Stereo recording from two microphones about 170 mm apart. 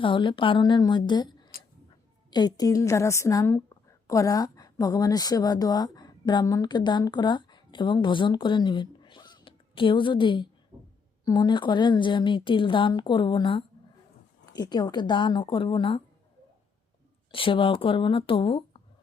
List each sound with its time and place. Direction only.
0.0 s a woman's voice: 30° left (ahead or behind)
17.3 s speech: 30° left (ahead or behind)